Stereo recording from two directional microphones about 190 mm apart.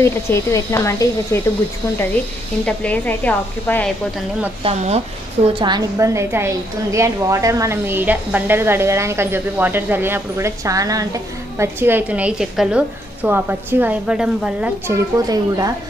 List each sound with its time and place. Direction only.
0.0 s speech: 15° left (ahead or behind)
2.6 s speech: 5° left (ahead or behind)
4.6 s speech: 35° right (ahead or behind)
5.5 s a woman's voice: 25° right (ahead or behind); by 14.7 s 5° right (ahead or behind)
14.9 s a woman's voice: 20° right (ahead or behind)